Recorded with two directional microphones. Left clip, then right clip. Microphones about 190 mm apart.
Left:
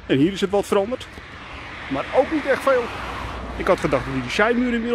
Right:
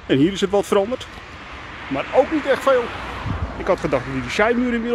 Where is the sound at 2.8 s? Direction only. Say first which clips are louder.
Right 1 dB; 40° left (ahead or behind).